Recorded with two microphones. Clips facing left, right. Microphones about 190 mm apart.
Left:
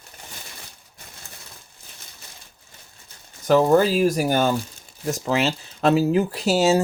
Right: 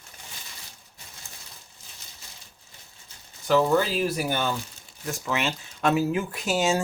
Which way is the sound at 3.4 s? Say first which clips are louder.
Left 5 dB; 45° left (ahead or behind).